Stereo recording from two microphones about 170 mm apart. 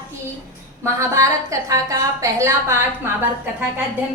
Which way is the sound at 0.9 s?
20° right (ahead or behind).